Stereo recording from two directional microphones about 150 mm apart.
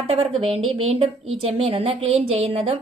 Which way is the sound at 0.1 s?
40° right (ahead or behind).